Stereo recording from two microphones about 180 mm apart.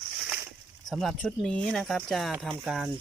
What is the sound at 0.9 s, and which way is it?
Speech, centre (ahead or behind).